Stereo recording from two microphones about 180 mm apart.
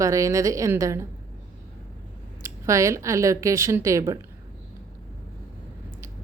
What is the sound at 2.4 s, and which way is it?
Speech, 15° right (ahead or behind).